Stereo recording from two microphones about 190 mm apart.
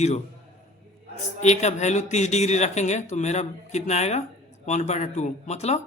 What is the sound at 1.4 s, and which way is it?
Speech, 35° left (ahead or behind).